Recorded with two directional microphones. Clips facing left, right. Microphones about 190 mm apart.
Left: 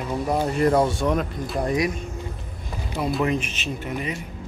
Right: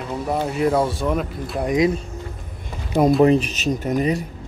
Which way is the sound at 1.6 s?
20° right (ahead or behind).